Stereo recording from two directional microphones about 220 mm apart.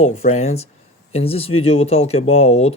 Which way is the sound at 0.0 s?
30° left (ahead or behind).